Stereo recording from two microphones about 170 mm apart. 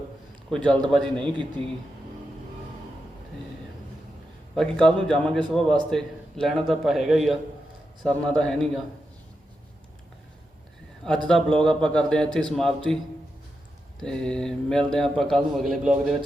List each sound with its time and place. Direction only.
0.5 s a man's voice: 5° left (ahead or behind)
1.6 s speech: 30° right (ahead or behind)
4.5 s a man's voice: 5° left (ahead or behind)
11.3 s a man's voice: 5° left (ahead or behind)
14.0 s a man's voice: 5° left (ahead or behind)